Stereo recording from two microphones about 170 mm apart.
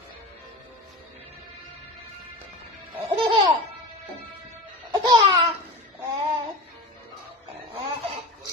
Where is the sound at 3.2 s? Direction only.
30° right (ahead or behind).